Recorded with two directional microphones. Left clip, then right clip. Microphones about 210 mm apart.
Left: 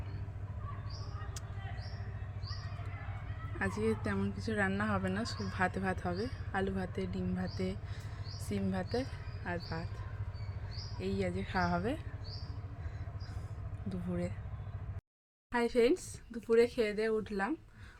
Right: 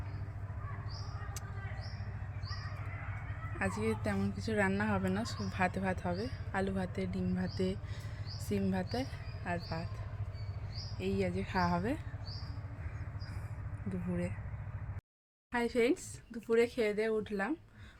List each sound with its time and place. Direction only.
3.6 s speech: centre (ahead or behind)
11.0 s speech: 5° right (ahead or behind)
13.9 s speech: centre (ahead or behind)
15.5 s speech: 5° right (ahead or behind)